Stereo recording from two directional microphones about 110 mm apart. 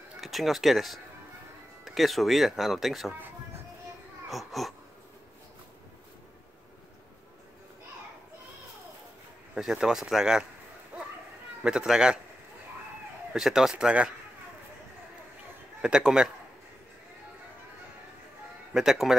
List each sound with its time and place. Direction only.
0.2 s speech: centre (ahead or behind)
4.3 s speech: centre (ahead or behind)
9.6 s speech: 5° right (ahead or behind)
10.9 s children playing: 15° right (ahead or behind)
11.6 s speech: 5° right (ahead or behind)
13.3 s speech: 5° right (ahead or behind)
15.8 s a man's voice: 5° right (ahead or behind)
18.7 s speech: 5° right (ahead or behind)